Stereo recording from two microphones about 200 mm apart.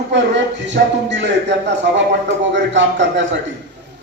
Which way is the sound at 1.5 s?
60° right (ahead or behind).